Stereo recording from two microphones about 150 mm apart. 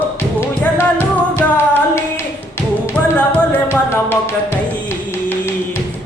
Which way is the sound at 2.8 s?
10° left (ahead or behind).